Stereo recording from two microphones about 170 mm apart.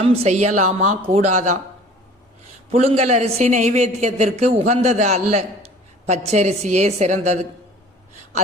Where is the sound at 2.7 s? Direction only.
40° right (ahead or behind).